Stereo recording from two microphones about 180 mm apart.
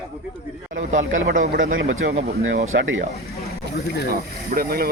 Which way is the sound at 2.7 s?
90° right.